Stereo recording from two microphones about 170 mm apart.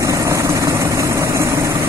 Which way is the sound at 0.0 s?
20° right (ahead or behind).